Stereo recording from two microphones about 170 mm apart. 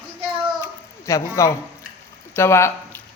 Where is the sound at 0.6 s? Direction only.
15° left (ahead or behind).